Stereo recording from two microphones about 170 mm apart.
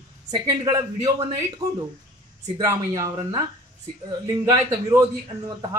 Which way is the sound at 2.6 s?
20° right (ahead or behind).